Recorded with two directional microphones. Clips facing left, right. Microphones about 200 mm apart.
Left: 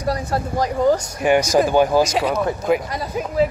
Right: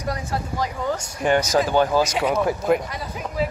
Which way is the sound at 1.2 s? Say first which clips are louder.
Left 3 dB; 10° left (ahead or behind).